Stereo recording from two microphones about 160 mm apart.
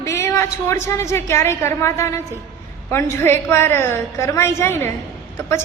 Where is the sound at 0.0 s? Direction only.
15° left (ahead or behind).